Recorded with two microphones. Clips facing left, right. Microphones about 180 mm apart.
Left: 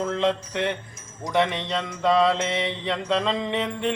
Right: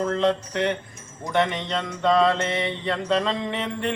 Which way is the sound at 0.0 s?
Centre (ahead or behind).